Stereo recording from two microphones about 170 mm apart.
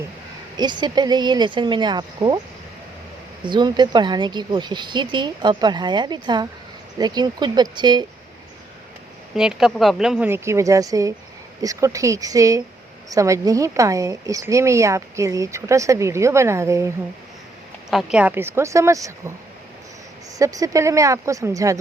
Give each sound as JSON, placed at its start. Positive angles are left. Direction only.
{"t": 0.5, "sound": "speech", "side_deg": -25}
{"t": 3.4, "sound": "speech", "side_deg": -25}
{"t": 9.3, "sound": "speech", "side_deg": -5}
{"t": 10.2, "sound": "speech", "side_deg": -15}
{"t": 17.9, "sound": "speech", "side_deg": -5}
{"t": 20.4, "sound": "speech", "side_deg": -20}